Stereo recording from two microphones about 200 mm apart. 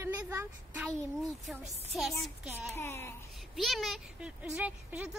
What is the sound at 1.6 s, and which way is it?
Speech, 35° right (ahead or behind).